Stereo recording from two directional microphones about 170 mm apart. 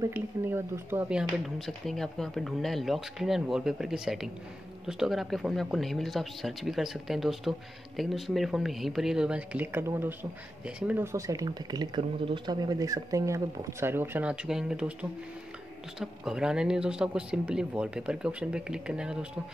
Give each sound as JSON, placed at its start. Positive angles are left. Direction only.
{"t": 0.0, "sound": "speech", "side_deg": -15}
{"t": 1.7, "sound": "speech", "side_deg": 5}